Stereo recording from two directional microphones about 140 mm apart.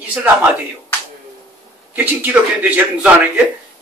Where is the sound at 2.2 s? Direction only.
10° right (ahead or behind).